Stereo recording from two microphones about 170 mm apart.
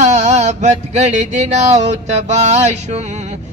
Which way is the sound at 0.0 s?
45° right (ahead or behind).